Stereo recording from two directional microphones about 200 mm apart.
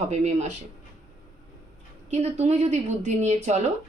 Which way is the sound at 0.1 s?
35° right (ahead or behind).